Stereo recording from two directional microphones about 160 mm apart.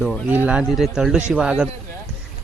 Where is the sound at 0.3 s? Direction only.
10° right (ahead or behind).